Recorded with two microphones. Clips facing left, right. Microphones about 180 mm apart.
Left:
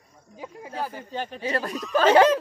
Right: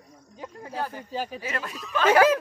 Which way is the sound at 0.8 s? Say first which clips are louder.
Even; 10° left (ahead or behind).